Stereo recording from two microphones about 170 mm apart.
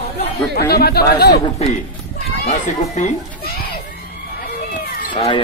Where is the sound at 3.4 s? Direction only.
65° left (ahead or behind).